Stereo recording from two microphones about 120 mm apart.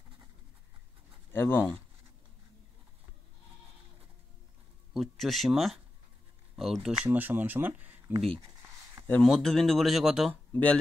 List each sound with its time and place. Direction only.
1.3 s speech: 20° left (ahead or behind)
4.9 s speech: centre (ahead or behind)
7.1 s speech: 15° right (ahead or behind)
9.2 s speech: 5° left (ahead or behind)
10.5 s speech: 10° left (ahead or behind)